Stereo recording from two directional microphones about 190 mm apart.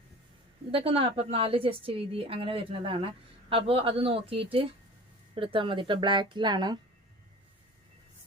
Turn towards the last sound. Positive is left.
turn(degrees=-20)  # may be behind; listen again after turning